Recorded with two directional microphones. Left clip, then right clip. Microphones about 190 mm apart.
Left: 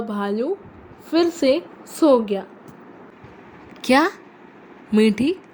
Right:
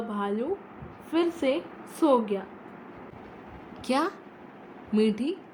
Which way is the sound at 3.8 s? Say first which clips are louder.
Left 10 dB; 45° left (ahead or behind).